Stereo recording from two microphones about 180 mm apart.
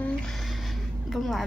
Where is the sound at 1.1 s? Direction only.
Centre (ahead or behind).